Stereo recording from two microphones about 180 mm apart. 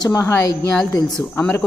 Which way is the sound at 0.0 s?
20° left (ahead or behind).